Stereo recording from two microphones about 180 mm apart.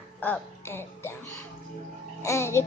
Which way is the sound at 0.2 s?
10° left (ahead or behind).